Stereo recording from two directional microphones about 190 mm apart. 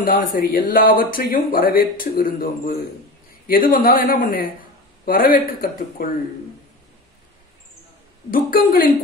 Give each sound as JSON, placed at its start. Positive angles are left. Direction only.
{"t": 0.0, "sound": "speech", "side_deg": 45}
{"t": 8.3, "sound": "speech", "side_deg": 45}